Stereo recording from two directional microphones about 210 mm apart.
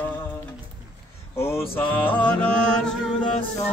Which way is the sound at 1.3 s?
10° left (ahead or behind).